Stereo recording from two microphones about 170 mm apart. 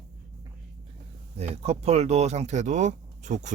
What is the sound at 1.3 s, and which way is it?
Speech, 40° right (ahead or behind).